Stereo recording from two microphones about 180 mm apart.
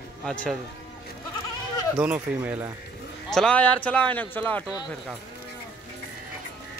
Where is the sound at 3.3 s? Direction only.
5° left (ahead or behind).